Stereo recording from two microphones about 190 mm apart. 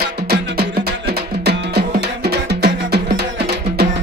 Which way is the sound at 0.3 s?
60° right (ahead or behind).